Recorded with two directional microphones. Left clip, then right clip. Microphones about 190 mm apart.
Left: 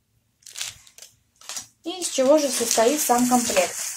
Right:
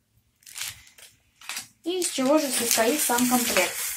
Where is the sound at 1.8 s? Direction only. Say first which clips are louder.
Left 4 dB; 55° left (ahead or behind).